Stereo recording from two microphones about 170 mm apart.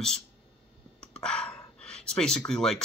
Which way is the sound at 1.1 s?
5° left (ahead or behind).